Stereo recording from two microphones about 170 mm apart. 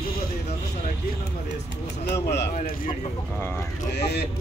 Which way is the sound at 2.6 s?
55° left (ahead or behind).